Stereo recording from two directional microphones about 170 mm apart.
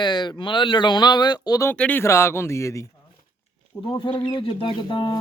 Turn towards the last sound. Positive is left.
turn(degrees=30)  # may be behind; listen again after turning